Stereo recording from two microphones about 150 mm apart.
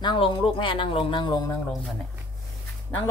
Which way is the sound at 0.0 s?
35° left (ahead or behind).